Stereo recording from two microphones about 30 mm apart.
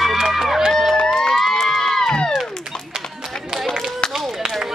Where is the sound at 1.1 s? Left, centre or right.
Centre.